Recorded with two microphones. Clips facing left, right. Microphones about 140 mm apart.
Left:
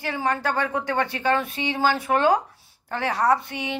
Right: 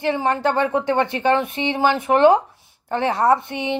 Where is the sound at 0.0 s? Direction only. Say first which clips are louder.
Right 6 dB; 20° right (ahead or behind).